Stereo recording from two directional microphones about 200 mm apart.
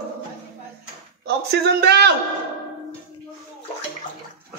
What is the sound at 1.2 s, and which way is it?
Speech, 55° right (ahead or behind).